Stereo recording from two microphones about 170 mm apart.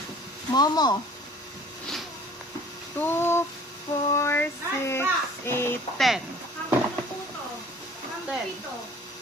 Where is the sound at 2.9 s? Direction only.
10° left (ahead or behind).